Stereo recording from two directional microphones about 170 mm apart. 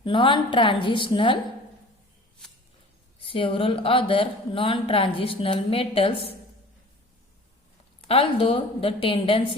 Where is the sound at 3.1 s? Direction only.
30° left (ahead or behind).